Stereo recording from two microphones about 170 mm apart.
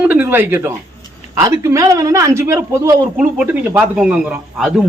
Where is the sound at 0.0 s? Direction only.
10° right (ahead or behind).